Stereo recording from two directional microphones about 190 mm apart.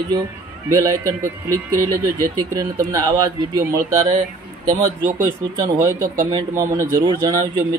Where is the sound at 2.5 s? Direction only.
20° right (ahead or behind).